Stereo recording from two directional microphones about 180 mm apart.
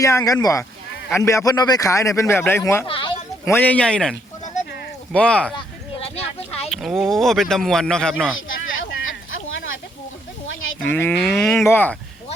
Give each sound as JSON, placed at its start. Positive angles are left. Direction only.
{"t": 0.0, "sound": "a man's voice", "side_deg": 15}
{"t": 2.8, "sound": "speech", "side_deg": 30}
{"t": 3.4, "sound": "a man's voice", "side_deg": 10}
{"t": 6.1, "sound": "a sound", "side_deg": 35}
{"t": 6.7, "sound": "speech", "side_deg": 0}
{"t": 8.8, "sound": "a sound", "side_deg": 90}
{"t": 10.8, "sound": "cattle", "side_deg": 10}
{"t": 11.2, "sound": "a man's voice", "side_deg": 0}